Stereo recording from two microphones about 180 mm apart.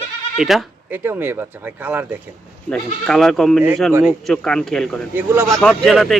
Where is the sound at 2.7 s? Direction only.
5° left (ahead or behind).